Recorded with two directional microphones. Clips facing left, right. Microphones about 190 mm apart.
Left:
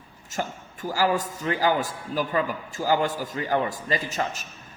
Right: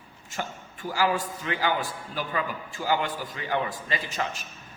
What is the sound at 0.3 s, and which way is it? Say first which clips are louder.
A man's voice: left 4 dB; 40° left (ahead or behind).